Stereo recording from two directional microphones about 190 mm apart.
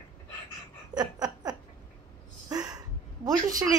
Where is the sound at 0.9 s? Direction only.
20° right (ahead or behind).